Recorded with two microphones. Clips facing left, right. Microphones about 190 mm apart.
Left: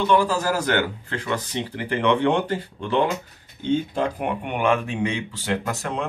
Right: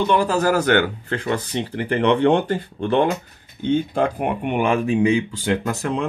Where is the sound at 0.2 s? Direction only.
60° right (ahead or behind).